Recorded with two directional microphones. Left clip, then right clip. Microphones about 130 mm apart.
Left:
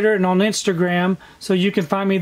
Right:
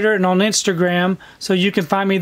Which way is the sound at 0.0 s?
30° right (ahead or behind).